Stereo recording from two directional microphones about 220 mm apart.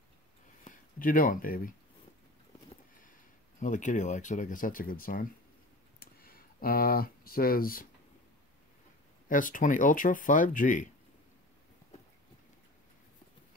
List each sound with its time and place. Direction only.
0.7 s speech: 40° left (ahead or behind)
3.0 s speech: 35° left (ahead or behind)
5.9 s a sound: 40° left (ahead or behind)
9.3 s speech: 35° left (ahead or behind)